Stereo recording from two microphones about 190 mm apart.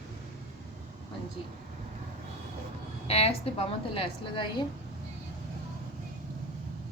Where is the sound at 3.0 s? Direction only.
30° left (ahead or behind).